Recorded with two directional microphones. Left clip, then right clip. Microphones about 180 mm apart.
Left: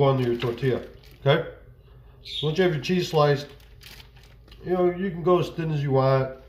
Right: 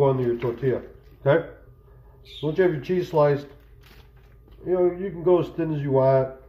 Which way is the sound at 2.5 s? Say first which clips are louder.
Right 2 dB; 5° right (ahead or behind).